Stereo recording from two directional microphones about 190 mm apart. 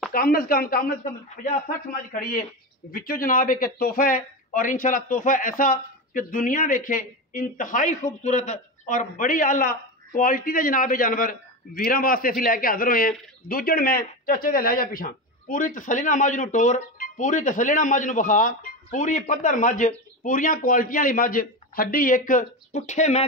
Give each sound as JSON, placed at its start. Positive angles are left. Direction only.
{"t": 0.1, "sound": "speech", "side_deg": 50}
{"t": 2.1, "sound": "speech", "side_deg": 50}